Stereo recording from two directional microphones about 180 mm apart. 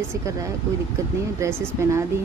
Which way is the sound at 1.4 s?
15° right (ahead or behind).